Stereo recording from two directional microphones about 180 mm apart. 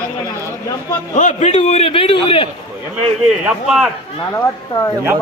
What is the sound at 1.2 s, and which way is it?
A man's voice, 40° left (ahead or behind).